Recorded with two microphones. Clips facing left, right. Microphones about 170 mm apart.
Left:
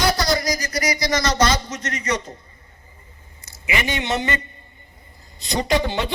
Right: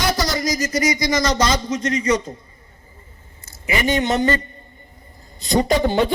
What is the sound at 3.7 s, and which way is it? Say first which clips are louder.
Speech: right 4 dB; 40° right (ahead or behind).